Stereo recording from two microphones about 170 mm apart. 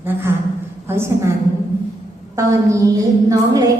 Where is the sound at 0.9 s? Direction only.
15° right (ahead or behind).